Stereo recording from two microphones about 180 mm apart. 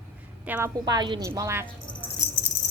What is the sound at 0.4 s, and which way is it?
Speech, 10° right (ahead or behind).